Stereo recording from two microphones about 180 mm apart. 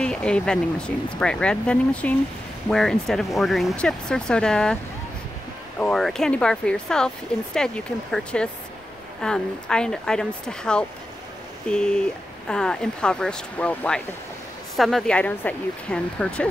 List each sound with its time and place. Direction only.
0.0 s speech: 5° left (ahead or behind)
5.8 s speech: 5° left (ahead or behind)